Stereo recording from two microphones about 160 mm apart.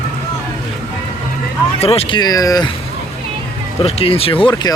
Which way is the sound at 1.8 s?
35° left (ahead or behind).